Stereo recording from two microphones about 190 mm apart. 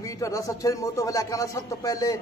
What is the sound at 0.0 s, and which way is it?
A man's voice, 15° left (ahead or behind).